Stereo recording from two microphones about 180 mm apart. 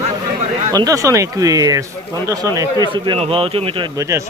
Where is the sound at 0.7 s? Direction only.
20° right (ahead or behind).